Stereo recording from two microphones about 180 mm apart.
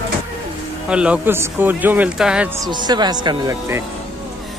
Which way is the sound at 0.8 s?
5° right (ahead or behind).